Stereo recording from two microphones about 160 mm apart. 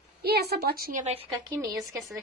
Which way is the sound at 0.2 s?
85° right.